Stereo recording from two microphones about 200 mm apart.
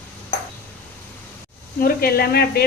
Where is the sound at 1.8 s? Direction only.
50° left (ahead or behind).